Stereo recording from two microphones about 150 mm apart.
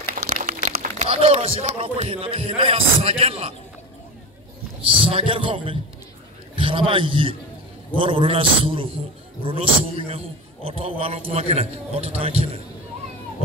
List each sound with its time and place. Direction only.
0.3 s speech: 50° right (ahead or behind)
5.0 s a man's voice: 35° right (ahead or behind)